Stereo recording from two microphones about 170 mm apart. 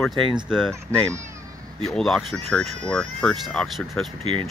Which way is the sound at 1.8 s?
Centre (ahead or behind).